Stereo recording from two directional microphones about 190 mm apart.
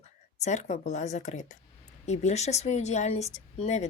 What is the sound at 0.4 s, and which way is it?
A woman's voice, 40° left (ahead or behind).